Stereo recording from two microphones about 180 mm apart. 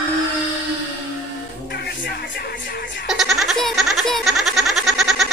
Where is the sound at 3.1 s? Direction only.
Centre (ahead or behind).